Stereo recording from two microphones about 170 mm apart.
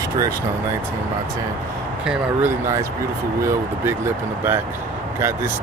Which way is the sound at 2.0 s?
5° right (ahead or behind).